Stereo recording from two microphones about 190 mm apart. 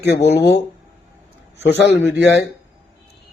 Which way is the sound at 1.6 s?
65° left (ahead or behind).